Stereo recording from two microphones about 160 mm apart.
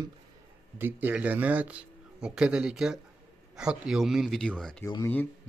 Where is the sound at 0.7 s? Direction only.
10° right (ahead or behind).